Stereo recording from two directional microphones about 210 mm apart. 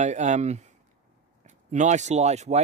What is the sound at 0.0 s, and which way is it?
Speech, 35° right (ahead or behind).